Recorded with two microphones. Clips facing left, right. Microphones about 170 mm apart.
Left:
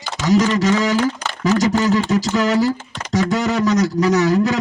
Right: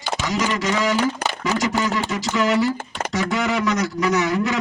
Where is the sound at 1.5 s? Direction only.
40° left (ahead or behind).